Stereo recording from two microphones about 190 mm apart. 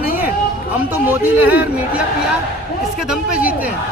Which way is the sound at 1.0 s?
10° right (ahead or behind).